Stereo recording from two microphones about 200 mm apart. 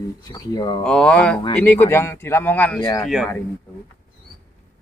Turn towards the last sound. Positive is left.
turn(degrees=0)  # may be behind; listen again after turning